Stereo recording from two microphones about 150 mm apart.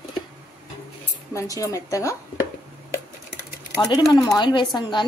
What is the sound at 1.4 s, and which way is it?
Speech, 20° left (ahead or behind).